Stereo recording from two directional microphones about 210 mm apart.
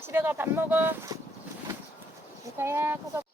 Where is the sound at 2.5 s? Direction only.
10° right (ahead or behind).